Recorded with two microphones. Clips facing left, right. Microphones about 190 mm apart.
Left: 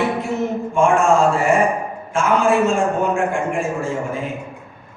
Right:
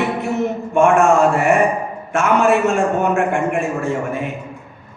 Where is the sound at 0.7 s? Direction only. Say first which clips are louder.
Right 3 dB; 65° right (ahead or behind).